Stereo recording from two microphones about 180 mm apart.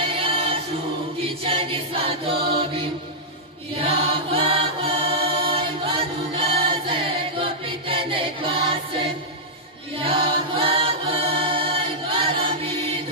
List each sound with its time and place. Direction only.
0.1 s choir: 30° right (ahead or behind)
1.4 s music: 30° right (ahead or behind)
3.7 s chant: 30° right (ahead or behind)